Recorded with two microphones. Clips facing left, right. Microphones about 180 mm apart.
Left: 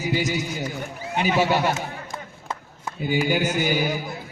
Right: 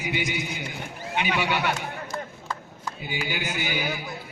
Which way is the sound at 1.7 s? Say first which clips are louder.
Even; 20° left (ahead or behind).